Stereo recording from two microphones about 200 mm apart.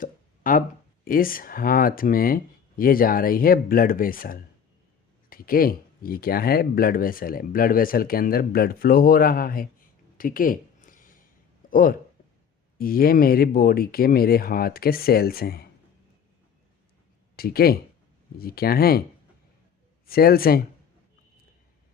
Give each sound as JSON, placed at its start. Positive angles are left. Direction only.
{"t": 0.0, "sound": "a sound", "side_deg": 45}
{"t": 1.0, "sound": "speech", "side_deg": 45}
{"t": 17.3, "sound": "speech", "side_deg": 50}
{"t": 20.1, "sound": "speech", "side_deg": 50}